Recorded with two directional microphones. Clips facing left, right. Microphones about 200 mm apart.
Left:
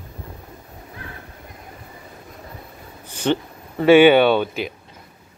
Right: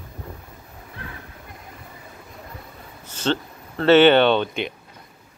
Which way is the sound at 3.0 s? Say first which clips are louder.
Left 3 dB; 15° left (ahead or behind).